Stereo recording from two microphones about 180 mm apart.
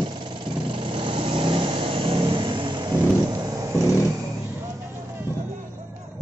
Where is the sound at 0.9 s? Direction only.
30° right (ahead or behind).